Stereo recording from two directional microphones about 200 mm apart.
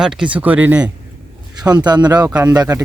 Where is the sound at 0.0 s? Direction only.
5° right (ahead or behind).